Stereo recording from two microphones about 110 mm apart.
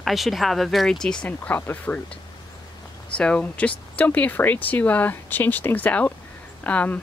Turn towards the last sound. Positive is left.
turn(degrees=15)  # may be behind; listen again after turning